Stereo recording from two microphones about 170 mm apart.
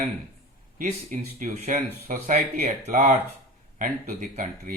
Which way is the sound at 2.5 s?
60° right (ahead or behind).